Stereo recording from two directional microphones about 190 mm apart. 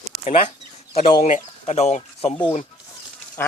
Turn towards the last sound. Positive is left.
turn(degrees=10)  # may be behind; listen again after turning